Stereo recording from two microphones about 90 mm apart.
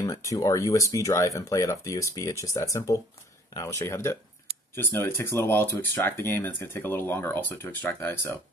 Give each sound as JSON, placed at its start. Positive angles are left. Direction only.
{"t": 0.0, "sound": "speech", "side_deg": 40}